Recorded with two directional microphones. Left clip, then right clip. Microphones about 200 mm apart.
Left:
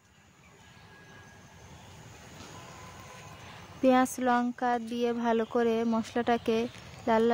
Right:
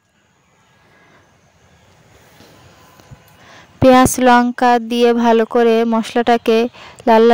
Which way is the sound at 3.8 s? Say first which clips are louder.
Right 15 dB; 50° right (ahead or behind).